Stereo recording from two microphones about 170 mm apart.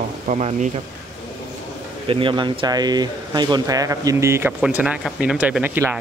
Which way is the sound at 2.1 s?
30° right (ahead or behind).